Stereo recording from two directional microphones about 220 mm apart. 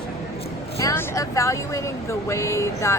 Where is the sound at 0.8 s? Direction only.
15° left (ahead or behind).